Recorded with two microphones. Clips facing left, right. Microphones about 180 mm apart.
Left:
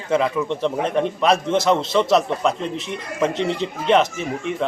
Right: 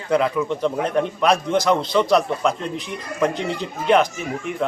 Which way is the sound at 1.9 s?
Centre (ahead or behind).